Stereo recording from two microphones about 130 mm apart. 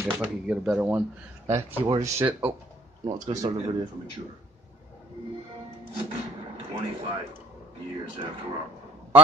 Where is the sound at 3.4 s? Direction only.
45° right (ahead or behind).